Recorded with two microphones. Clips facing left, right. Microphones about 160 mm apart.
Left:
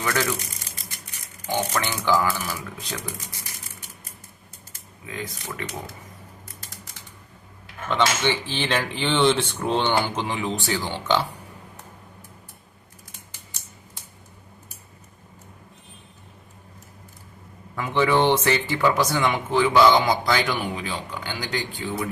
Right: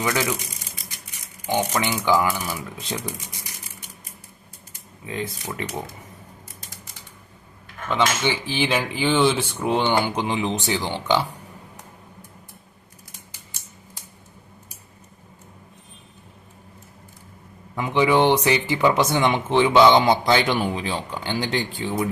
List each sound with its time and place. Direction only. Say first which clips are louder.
0.0 s speech: right 2 dB; 15° right (ahead or behind)
1.5 s speech: right 3 dB; 15° right (ahead or behind)
5.0 s speech: right 4 dB; 25° right (ahead or behind)
8.2 s speech: right 1 dB; 10° right (ahead or behind)
17.7 s speech: right 2 dB; 15° right (ahead or behind)